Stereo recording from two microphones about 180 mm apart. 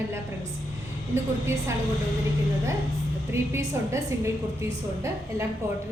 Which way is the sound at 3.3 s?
15° right (ahead or behind).